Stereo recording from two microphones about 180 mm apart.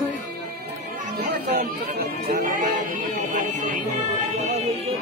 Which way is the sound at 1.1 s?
60° right (ahead or behind).